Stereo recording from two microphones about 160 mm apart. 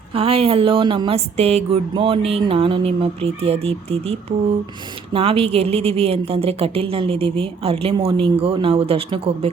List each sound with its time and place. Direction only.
0.1 s a woman's voice: 35° right (ahead or behind)